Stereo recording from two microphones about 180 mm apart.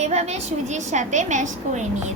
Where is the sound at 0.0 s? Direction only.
40° right (ahead or behind).